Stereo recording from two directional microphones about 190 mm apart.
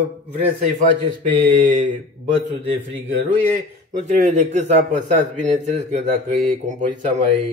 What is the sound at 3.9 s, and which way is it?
Speech, 40° right (ahead or behind).